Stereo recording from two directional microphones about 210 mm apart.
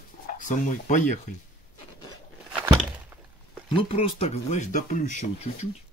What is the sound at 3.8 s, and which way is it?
Speech, 25° left (ahead or behind).